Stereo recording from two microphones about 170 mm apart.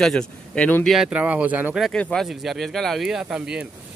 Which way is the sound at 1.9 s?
5° left (ahead or behind).